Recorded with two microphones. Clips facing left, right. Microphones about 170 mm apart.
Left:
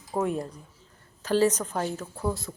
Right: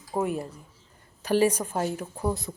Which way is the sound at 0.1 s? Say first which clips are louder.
Even; 10° right (ahead or behind).